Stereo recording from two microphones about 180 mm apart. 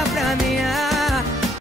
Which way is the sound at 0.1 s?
Centre (ahead or behind).